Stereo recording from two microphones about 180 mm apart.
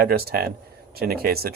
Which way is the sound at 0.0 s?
60° right (ahead or behind).